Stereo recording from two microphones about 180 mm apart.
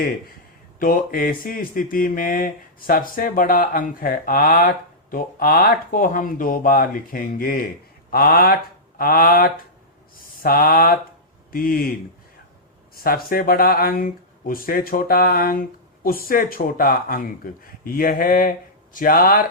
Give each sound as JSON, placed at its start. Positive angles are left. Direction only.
{"t": 0.8, "sound": "speech", "side_deg": 50}
{"t": 13.0, "sound": "speech", "side_deg": 55}